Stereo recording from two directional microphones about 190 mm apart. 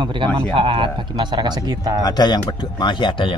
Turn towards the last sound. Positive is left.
turn(degrees=25)  # may be behind; listen again after turning